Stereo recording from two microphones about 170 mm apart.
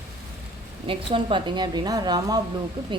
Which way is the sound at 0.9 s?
30° right (ahead or behind).